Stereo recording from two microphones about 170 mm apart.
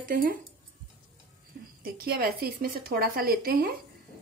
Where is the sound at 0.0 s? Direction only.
55° right (ahead or behind).